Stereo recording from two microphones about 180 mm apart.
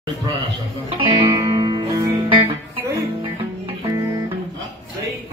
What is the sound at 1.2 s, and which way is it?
Music, 25° right (ahead or behind).